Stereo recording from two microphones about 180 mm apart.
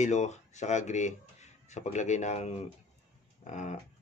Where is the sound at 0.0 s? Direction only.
40° left (ahead or behind).